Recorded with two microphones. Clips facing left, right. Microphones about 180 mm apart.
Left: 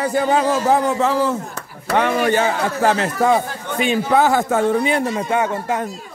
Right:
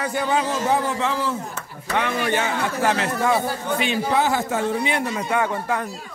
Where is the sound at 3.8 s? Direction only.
50° left (ahead or behind).